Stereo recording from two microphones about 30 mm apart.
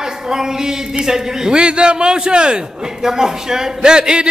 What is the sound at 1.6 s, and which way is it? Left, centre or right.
A man's voice, right.